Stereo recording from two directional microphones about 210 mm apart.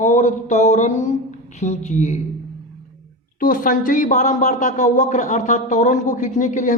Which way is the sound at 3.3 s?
40° left (ahead or behind).